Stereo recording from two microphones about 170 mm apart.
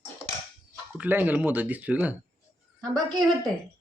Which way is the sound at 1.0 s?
10° right (ahead or behind).